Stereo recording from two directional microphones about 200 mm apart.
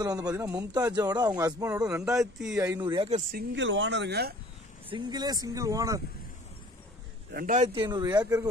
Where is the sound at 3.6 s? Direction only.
65° right (ahead or behind).